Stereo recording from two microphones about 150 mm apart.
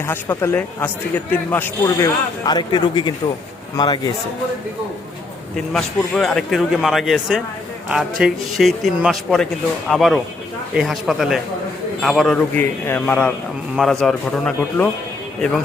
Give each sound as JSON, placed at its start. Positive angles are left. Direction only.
{"t": 0.0, "sound": "a man's voice", "side_deg": 15}
{"t": 5.7, "sound": "speech", "side_deg": 0}
{"t": 12.5, "sound": "a man's voice", "side_deg": 15}